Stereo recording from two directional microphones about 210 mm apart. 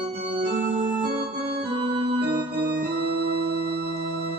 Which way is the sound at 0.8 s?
45° right (ahead or behind).